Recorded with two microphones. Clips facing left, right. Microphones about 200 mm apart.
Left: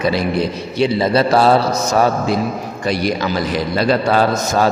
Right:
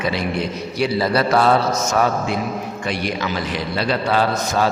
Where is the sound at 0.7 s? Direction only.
25° left (ahead or behind).